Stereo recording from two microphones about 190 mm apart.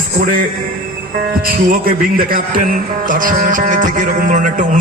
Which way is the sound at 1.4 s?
50° right (ahead or behind).